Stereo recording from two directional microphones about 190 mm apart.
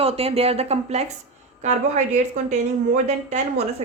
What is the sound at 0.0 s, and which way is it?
A woman's voice, 30° right (ahead or behind).